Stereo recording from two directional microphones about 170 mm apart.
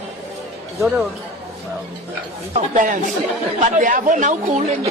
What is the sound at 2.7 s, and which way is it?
Speech, 50° right (ahead or behind).